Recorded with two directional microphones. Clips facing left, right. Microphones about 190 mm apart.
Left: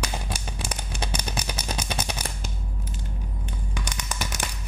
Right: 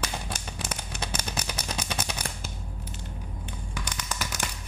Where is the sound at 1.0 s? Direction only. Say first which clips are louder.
Left 3 dB; 25° left (ahead or behind).